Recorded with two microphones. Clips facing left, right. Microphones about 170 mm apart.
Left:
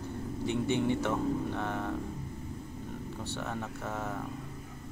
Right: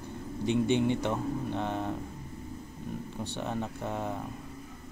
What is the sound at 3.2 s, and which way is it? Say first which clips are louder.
Speech: right 3 dB; 15° right (ahead or behind).